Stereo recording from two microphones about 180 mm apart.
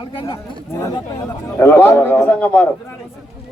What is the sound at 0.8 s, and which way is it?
Speech, 15° left (ahead or behind).